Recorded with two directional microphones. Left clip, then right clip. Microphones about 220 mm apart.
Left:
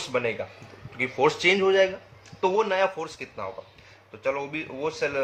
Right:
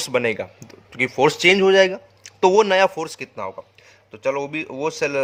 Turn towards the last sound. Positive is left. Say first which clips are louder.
# right 5 dB
turn(degrees=-45)  # may be behind; listen again after turning